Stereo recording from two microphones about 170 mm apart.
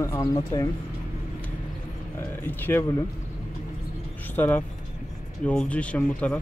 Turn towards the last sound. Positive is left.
turn(degrees=5)  # may be behind; listen again after turning